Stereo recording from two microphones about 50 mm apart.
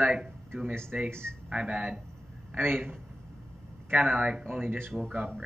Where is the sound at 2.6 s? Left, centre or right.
Right.